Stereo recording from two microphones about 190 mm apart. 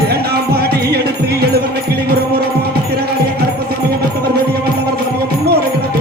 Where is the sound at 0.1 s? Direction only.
55° right (ahead or behind).